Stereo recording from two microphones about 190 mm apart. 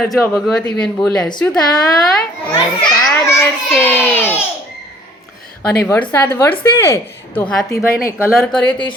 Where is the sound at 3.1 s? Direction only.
5° left (ahead or behind).